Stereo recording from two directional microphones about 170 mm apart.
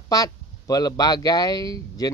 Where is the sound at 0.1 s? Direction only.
20° left (ahead or behind).